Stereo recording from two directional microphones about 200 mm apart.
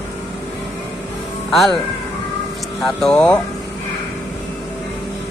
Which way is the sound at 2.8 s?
5° left (ahead or behind).